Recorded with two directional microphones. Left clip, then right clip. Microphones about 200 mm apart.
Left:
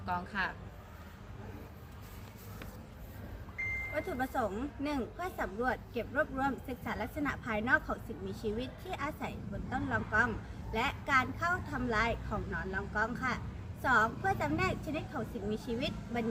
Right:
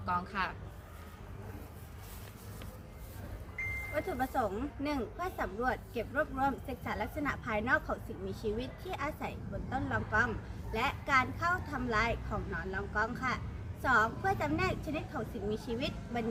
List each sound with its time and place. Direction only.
0.0 s speech: 20° right (ahead or behind)
3.9 s speech: centre (ahead or behind)